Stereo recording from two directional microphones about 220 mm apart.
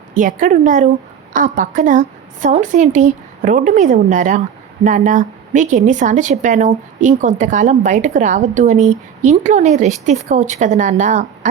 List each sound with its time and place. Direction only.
0.1 s a woman's voice: 35° right (ahead or behind)